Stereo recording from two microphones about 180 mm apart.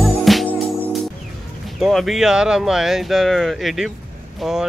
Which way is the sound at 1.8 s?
Centre (ahead or behind).